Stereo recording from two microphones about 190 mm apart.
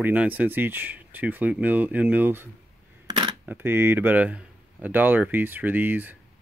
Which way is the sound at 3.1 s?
25° right (ahead or behind).